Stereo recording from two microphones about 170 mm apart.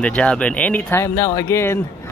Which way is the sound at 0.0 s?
5° left (ahead or behind).